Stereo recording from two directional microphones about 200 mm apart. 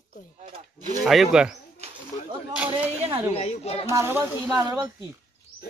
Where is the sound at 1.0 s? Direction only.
Centre (ahead or behind).